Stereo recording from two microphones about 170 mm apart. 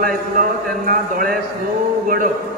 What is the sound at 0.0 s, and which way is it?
A man's voice, 55° right (ahead or behind).